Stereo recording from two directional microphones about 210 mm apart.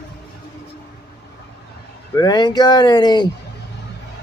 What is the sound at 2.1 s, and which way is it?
Speech, 20° left (ahead or behind).